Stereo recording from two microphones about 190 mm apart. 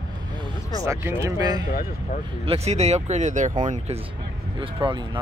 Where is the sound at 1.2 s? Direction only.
20° right (ahead or behind).